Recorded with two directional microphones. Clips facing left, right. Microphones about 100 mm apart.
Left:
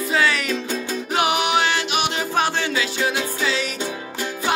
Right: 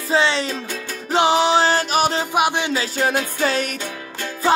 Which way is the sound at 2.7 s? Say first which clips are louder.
Right 2 dB; 40° right (ahead or behind).